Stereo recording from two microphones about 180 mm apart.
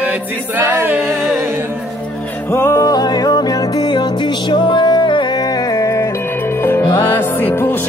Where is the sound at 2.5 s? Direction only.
15° left (ahead or behind).